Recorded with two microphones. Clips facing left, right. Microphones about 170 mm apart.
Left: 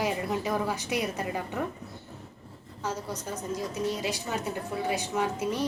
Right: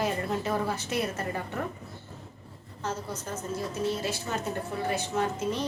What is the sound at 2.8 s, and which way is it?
Speech, 10° left (ahead or behind).